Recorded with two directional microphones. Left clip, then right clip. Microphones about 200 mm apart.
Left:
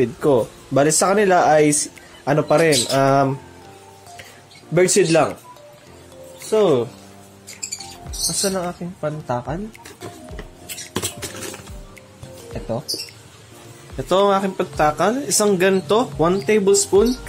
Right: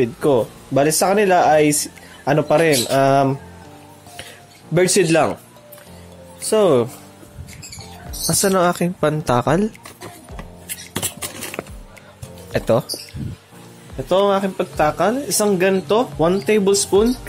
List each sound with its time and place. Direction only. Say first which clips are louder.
0.0 s speech: even; 5° right (ahead or behind)
4.7 s speech: even; 15° right (ahead or behind)
6.5 s speech: right 2 dB; 30° right (ahead or behind)
8.4 s speech: right 9 dB; 35° right (ahead or behind)
13.9 s speech: even; centre (ahead or behind)
16.4 s speech: even; 15° right (ahead or behind)